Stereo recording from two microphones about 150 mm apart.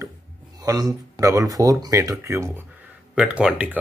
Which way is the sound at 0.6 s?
25° right (ahead or behind).